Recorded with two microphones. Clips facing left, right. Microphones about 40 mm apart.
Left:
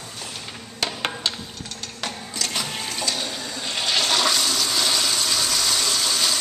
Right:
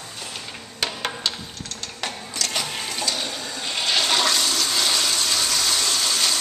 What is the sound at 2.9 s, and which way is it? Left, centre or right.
Water, centre.